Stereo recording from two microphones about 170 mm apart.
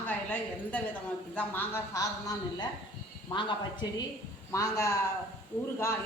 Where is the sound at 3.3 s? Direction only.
25° left (ahead or behind).